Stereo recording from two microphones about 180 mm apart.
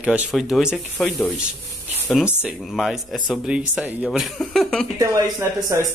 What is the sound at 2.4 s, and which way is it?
Speech, centre (ahead or behind).